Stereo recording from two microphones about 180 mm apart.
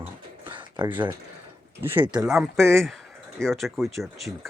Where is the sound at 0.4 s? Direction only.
25° right (ahead or behind).